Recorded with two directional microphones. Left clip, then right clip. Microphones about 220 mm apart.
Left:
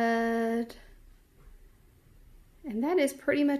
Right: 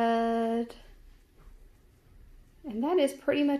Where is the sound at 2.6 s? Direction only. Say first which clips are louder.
Right 1 dB; 15° left (ahead or behind).